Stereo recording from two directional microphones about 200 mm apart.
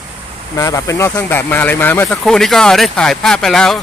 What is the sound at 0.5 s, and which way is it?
Speech, 15° left (ahead or behind).